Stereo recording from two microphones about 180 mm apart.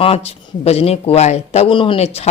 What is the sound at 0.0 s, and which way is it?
Speech, 35° left (ahead or behind).